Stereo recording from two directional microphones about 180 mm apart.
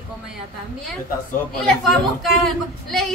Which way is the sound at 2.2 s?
Centre (ahead or behind).